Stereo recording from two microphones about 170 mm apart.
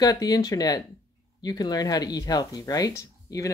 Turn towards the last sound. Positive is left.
turn(degrees=20)  # may be behind; listen again after turning